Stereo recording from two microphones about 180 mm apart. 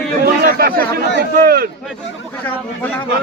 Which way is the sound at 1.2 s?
60° right (ahead or behind).